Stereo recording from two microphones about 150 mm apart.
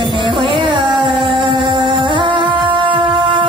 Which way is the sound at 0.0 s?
30° right (ahead or behind).